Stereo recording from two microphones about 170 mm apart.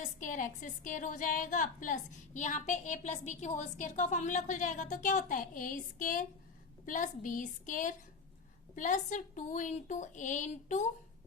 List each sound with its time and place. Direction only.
0.0 s a woman's voice: 50° left (ahead or behind)